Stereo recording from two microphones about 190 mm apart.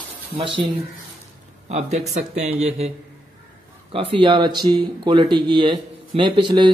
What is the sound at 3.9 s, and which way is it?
Speech, 25° right (ahead or behind).